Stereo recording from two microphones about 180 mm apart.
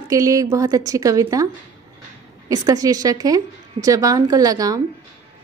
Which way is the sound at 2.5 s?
20° right (ahead or behind).